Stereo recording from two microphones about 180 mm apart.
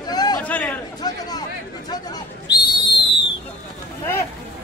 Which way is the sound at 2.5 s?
25° left (ahead or behind).